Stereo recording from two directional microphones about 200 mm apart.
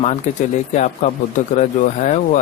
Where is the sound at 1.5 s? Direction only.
40° left (ahead or behind).